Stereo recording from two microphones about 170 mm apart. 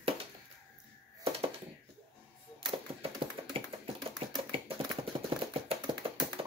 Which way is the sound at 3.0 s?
35° right (ahead or behind).